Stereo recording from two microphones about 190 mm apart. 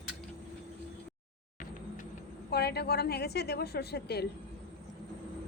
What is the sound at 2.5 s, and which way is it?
A woman's voice, 60° left (ahead or behind).